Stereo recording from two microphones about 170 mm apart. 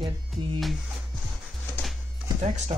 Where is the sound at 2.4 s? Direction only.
40° right (ahead or behind).